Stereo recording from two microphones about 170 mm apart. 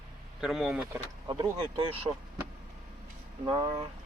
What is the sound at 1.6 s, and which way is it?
Speech, 30° right (ahead or behind).